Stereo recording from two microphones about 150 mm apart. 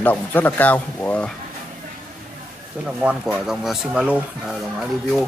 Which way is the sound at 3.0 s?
5° right (ahead or behind).